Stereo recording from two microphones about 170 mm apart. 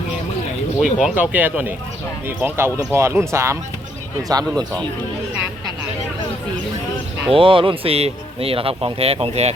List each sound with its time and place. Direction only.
0.8 s speech: centre (ahead or behind)
7.3 s speech: 30° right (ahead or behind)